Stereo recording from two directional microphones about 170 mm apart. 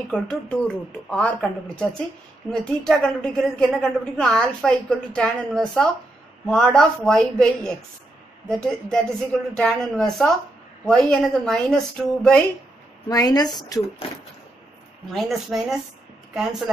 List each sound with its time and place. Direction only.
0.1 s a woman's voice: 5° left (ahead or behind)
13.1 s speech: 20° left (ahead or behind)
15.0 s a woman's voice: centre (ahead or behind)